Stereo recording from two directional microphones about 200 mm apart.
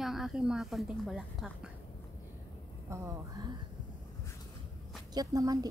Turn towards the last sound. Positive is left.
turn(degrees=-20)  # may be behind; listen again after turning